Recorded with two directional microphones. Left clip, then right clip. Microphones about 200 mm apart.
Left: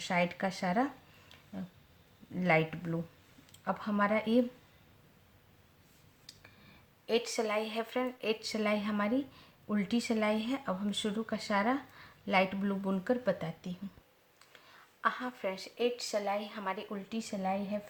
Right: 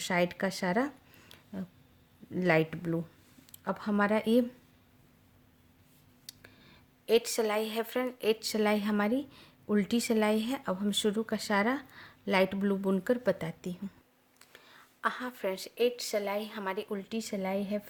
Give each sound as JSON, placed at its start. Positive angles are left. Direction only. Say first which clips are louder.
{"t": 0.0, "sound": "speech", "louder": "right 2 dB", "side_deg": -50}
{"t": 6.3, "sound": "a sound", "louder": "right 4 dB", "side_deg": -50}
{"t": 7.0, "sound": "speech", "louder": "right 5 dB", "side_deg": -50}